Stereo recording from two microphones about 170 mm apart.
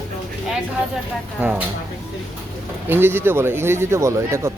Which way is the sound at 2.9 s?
15° right (ahead or behind).